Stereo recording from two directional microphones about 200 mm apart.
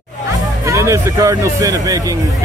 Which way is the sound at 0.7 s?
15° right (ahead or behind).